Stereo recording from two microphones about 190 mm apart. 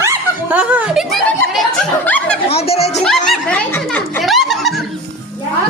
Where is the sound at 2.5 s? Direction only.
30° left (ahead or behind).